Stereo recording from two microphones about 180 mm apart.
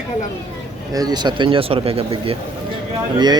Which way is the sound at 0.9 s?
20° right (ahead or behind).